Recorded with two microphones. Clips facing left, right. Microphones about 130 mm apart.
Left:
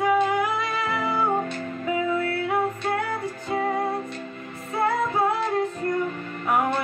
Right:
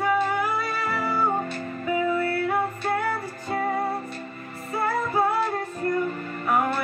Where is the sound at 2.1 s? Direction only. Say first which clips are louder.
Even; 5° right (ahead or behind).